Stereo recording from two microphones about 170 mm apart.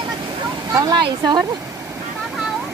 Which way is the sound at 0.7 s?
20° right (ahead or behind).